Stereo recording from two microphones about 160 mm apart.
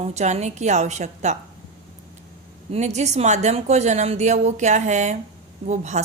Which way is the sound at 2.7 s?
45° right (ahead or behind).